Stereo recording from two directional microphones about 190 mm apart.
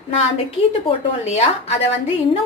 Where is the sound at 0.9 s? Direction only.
30° left (ahead or behind).